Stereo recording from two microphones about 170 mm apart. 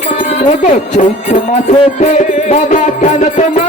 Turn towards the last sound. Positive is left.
turn(degrees=45)  # may be behind; listen again after turning